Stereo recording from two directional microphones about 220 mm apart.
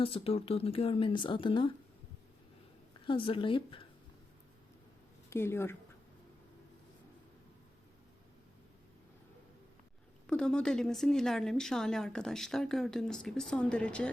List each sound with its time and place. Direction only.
0.0 s speech: 25° left (ahead or behind)
3.1 s speech: 25° left (ahead or behind)
5.3 s speech: 10° left (ahead or behind)
10.2 s speech: 5° left (ahead or behind)